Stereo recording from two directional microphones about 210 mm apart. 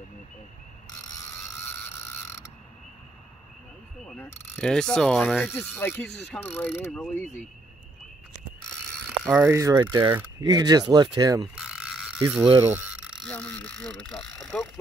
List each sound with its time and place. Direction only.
4.0 s speech: 5° left (ahead or behind)
5.6 s pulleys: 10° left (ahead or behind)
9.2 s mechanisms: centre (ahead or behind)
9.5 s speech: 15° right (ahead or behind)
11.5 s ratchet: 5° right (ahead or behind)
12.2 s speech: 10° right (ahead or behind)
12.5 s a sound: 10° right (ahead or behind)
13.2 s speech: 5° left (ahead or behind)